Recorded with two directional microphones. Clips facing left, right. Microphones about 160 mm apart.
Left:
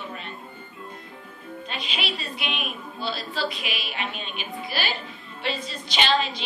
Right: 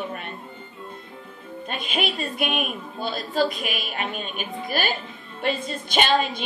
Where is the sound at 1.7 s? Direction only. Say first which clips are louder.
Right 5 dB; 50° right (ahead or behind).